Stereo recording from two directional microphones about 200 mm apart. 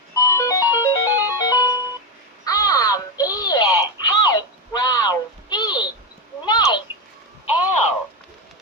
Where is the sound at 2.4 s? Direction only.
20° left (ahead or behind).